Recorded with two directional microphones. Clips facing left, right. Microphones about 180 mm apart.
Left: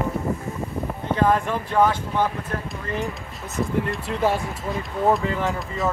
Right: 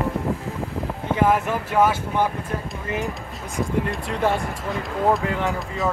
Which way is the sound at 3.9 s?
Centre (ahead or behind).